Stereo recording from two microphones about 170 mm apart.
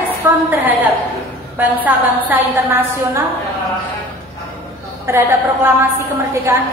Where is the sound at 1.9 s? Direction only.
10° right (ahead or behind).